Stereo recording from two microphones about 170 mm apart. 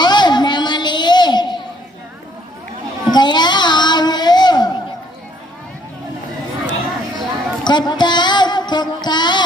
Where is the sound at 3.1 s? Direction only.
25° left (ahead or behind).